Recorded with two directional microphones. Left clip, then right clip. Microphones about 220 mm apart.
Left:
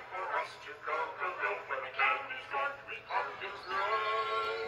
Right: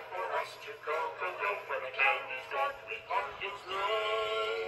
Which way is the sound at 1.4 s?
40° right (ahead or behind).